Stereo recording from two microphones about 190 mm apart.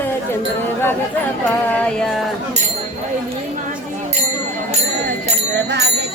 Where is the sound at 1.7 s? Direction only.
5° left (ahead or behind).